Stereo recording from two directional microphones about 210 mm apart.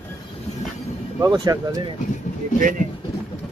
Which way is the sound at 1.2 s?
20° right (ahead or behind).